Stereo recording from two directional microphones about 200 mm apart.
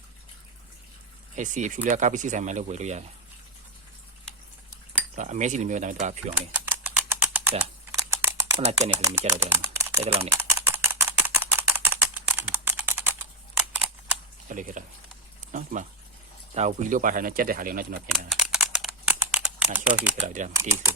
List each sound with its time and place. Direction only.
1.4 s speech: 40° right (ahead or behind)
5.1 s speech: 35° right (ahead or behind)
6.5 s typing: 10° right (ahead or behind)
9.0 s speech: 10° right (ahead or behind)
10.0 s speech: 30° right (ahead or behind)
10.3 s a sound: 10° right (ahead or behind)
14.5 s speech: 40° right (ahead or behind)
18.3 s typing: centre (ahead or behind)
20.2 s speech: 40° right (ahead or behind)
20.5 s speech: 15° right (ahead or behind)